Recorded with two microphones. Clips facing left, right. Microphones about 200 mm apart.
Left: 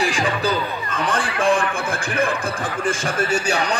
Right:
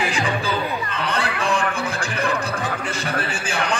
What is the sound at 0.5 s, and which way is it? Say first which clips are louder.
A man's voice: left 1 dB; 45° left (ahead or behind).